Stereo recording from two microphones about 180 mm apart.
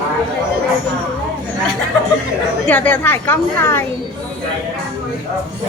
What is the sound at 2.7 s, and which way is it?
A woman's voice, 10° left (ahead or behind).